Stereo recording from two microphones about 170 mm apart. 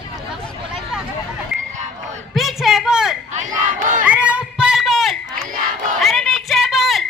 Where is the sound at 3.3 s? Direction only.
45° right (ahead or behind).